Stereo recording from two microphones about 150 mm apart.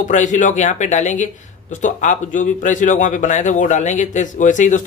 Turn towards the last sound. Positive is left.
turn(degrees=55)  # may be behind; listen again after turning